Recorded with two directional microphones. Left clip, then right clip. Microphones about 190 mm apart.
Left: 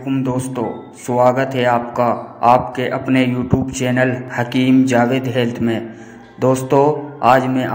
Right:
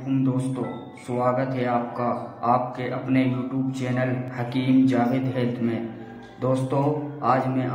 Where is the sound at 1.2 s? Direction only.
40° left (ahead or behind).